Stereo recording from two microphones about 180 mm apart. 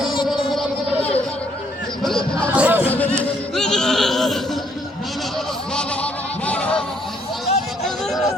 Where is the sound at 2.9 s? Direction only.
10° left (ahead or behind).